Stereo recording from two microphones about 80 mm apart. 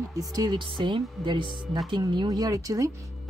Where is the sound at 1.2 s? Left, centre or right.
Right.